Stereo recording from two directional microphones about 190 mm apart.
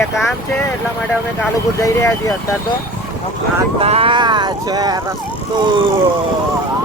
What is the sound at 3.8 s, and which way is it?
Speech, 30° right (ahead or behind).